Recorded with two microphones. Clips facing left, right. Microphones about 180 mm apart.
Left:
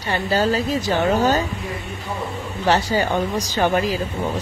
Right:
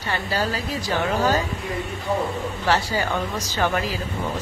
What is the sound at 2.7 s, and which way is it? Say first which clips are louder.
Speech: left 4 dB; 20° left (ahead or behind).